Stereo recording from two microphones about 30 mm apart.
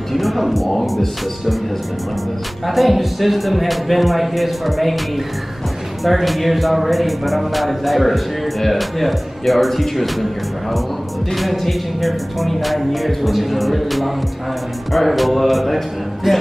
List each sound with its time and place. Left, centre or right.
0.1 s music: centre
2.6 s music: centre
6.0 s music: centre
11.3 s music: centre
16.3 s speech: centre